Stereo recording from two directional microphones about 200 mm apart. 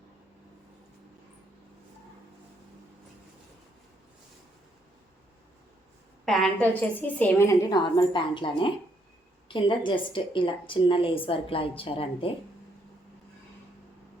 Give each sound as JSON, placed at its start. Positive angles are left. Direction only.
{"t": 6.2, "sound": "a woman's voice", "side_deg": 0}